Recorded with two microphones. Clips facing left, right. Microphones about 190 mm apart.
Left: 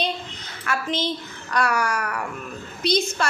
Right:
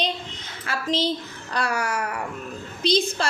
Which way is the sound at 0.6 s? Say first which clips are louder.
Right 1 dB; 35° right (ahead or behind).